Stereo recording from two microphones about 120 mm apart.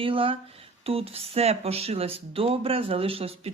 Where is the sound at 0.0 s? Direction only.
50° right (ahead or behind).